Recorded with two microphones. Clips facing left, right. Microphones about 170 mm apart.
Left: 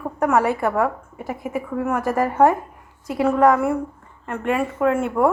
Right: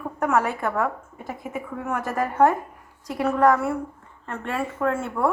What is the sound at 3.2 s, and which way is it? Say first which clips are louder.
A woman's voice: left 3 dB; 20° left (ahead or behind).